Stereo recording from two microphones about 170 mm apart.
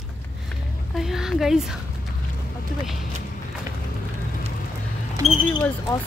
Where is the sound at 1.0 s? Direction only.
Centre (ahead or behind).